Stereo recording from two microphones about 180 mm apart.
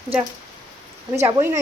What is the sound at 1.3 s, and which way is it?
Speech, 15° right (ahead or behind).